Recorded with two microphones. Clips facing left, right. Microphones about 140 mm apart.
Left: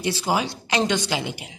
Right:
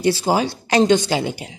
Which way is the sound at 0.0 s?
35° right (ahead or behind).